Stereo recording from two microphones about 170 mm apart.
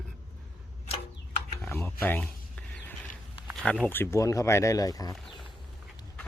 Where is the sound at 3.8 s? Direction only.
15° left (ahead or behind).